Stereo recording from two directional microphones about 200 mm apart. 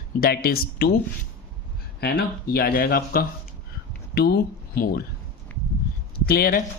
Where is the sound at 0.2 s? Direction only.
50° left (ahead or behind).